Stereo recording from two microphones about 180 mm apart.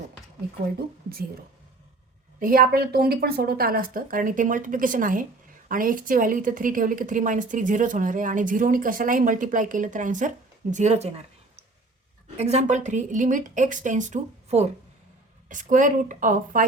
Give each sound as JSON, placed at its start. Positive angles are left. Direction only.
{"t": 2.4, "sound": "a woman's voice", "side_deg": -55}
{"t": 12.4, "sound": "a woman's voice", "side_deg": -35}